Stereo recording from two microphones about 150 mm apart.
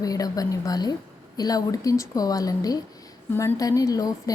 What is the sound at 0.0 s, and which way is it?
A woman's voice, 25° left (ahead or behind).